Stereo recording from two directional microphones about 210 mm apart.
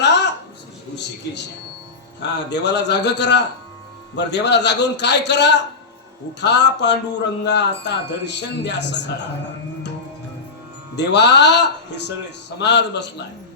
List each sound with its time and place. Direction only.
0.0 s a sound: 55° left (ahead or behind)
2.5 s speech: 55° left (ahead or behind)
10.9 s speech: 55° left (ahead or behind)